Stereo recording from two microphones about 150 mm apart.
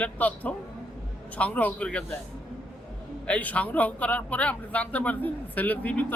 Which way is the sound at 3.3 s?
10° left (ahead or behind).